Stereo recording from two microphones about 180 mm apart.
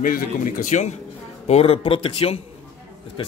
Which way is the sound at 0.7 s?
40° left (ahead or behind).